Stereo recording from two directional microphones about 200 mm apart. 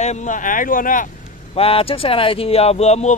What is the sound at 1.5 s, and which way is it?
Speech, 30° left (ahead or behind).